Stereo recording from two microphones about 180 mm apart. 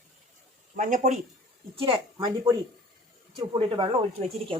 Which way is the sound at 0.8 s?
45° right (ahead or behind).